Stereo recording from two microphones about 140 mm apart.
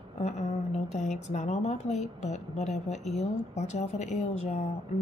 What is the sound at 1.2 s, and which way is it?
A woman's voice, 55° left (ahead or behind).